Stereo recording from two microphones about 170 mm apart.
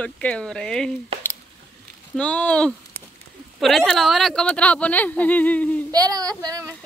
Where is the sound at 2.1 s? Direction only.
5° left (ahead or behind).